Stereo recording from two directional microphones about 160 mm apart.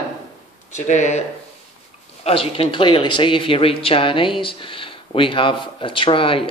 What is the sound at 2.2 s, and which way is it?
Speech, 35° left (ahead or behind).